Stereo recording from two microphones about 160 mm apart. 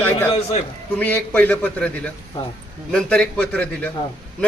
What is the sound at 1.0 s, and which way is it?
Speech, 10° left (ahead or behind).